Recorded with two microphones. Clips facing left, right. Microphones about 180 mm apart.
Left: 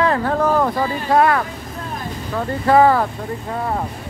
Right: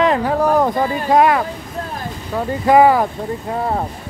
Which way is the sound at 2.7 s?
15° right (ahead or behind).